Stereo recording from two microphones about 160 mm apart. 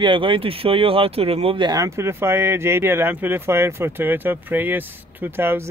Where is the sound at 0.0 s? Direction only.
30° right (ahead or behind).